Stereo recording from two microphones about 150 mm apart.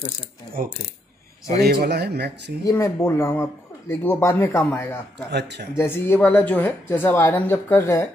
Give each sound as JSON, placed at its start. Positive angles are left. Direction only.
{"t": 1.6, "sound": "speech", "side_deg": -90}
{"t": 2.6, "sound": "speech", "side_deg": 20}